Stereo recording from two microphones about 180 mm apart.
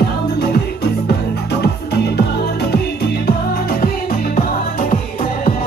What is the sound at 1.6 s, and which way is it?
Music, 65° left (ahead or behind).